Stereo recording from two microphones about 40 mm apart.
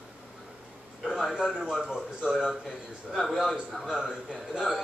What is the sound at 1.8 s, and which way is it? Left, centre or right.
Speech, right.